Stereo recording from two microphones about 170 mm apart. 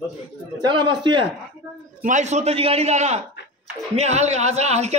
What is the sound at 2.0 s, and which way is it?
A man's voice, 45° right (ahead or behind).